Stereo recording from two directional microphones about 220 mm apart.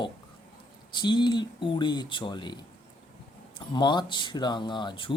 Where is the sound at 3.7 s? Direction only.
20° left (ahead or behind).